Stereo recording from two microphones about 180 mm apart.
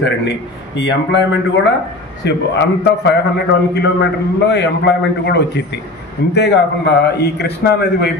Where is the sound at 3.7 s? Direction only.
75° left (ahead or behind).